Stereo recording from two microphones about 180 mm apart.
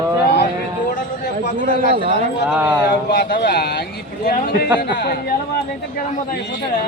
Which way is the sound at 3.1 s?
55° left (ahead or behind).